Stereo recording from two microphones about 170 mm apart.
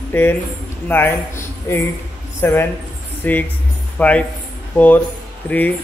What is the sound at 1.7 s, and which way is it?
A man's voice, 15° left (ahead or behind).